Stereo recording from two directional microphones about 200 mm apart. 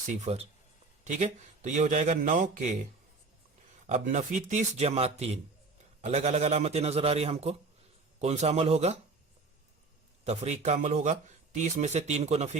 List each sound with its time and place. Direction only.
0.1 s speech: 30° right (ahead or behind)
3.8 s speech: 35° right (ahead or behind)
10.2 s speech: 35° right (ahead or behind)